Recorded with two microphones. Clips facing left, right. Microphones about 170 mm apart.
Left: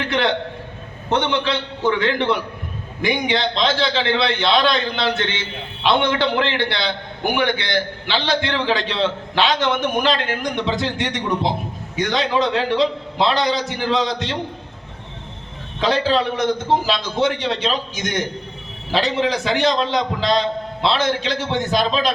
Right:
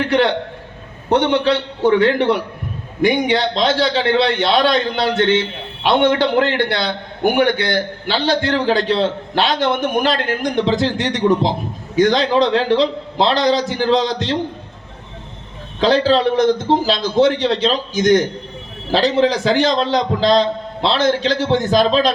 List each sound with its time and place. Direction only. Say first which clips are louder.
1.1 s a man's voice: right 5 dB; 45° right (ahead or behind)
15.8 s a man's voice: right 5 dB; 35° right (ahead or behind)